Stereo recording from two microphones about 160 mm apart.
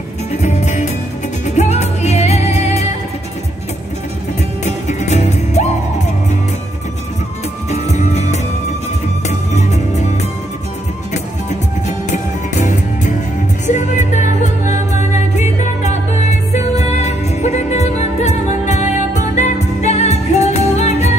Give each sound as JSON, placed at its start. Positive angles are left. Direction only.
{"t": 0.4, "sound": "music", "side_deg": 45}
{"t": 4.6, "sound": "music", "side_deg": 45}
{"t": 7.7, "sound": "music", "side_deg": 45}
{"t": 9.5, "sound": "music", "side_deg": 45}
{"t": 12.1, "sound": "music", "side_deg": 50}